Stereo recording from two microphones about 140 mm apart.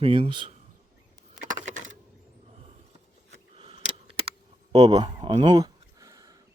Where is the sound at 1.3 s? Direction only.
65° right (ahead or behind).